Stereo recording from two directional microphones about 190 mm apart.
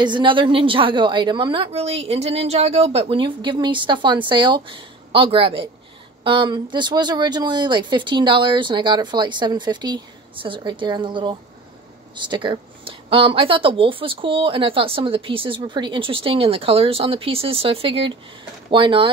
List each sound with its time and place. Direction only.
0.0 s speech: 25° right (ahead or behind)